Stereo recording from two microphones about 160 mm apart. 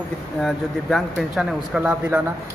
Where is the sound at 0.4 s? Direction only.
Centre (ahead or behind).